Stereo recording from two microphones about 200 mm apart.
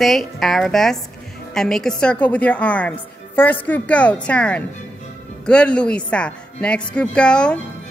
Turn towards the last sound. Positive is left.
turn(degrees=5)  # may be behind; listen again after turning